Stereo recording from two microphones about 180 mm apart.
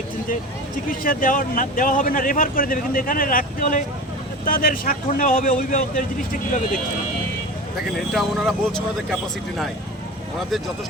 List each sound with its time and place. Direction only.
0.9 s a man's voice: 50° left (ahead or behind)
7.9 s speech: centre (ahead or behind)